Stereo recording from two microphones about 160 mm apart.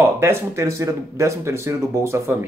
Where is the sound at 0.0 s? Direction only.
15° right (ahead or behind).